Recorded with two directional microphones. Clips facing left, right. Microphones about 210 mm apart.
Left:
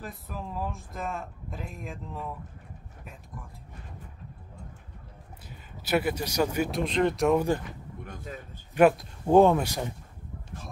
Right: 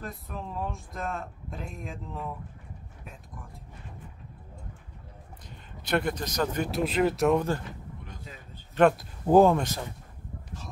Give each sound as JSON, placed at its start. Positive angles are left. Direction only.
{"t": 0.0, "sound": "speech", "side_deg": 0}
{"t": 5.5, "sound": "a man's voice", "side_deg": 5}
{"t": 6.7, "sound": "speech", "side_deg": -5}
{"t": 7.3, "sound": "a man's voice", "side_deg": 15}
{"t": 8.0, "sound": "a sound", "side_deg": 50}
{"t": 8.9, "sound": "speech", "side_deg": 0}